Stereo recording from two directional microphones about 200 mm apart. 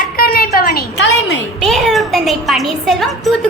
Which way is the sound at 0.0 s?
50° left (ahead or behind).